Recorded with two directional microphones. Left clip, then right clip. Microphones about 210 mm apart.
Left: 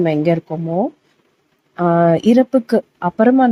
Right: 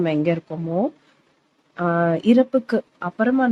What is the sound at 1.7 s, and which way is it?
Speech, 15° left (ahead or behind).